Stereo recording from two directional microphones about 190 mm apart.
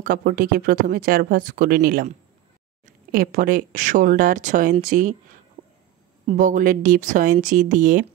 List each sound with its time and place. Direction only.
0.0 s speech: 50° right (ahead or behind)
5.6 s a sound: 40° right (ahead or behind)
6.2 s speech: 40° right (ahead or behind)